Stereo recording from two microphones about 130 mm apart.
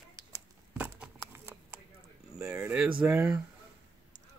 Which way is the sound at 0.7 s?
10° right (ahead or behind).